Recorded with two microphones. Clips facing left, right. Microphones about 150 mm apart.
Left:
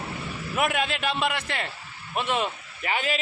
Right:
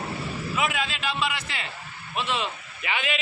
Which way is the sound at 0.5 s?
55° left (ahead or behind).